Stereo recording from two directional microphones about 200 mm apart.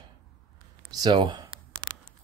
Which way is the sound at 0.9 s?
20° right (ahead or behind).